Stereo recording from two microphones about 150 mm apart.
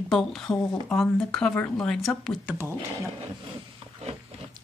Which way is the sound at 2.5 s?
15° right (ahead or behind).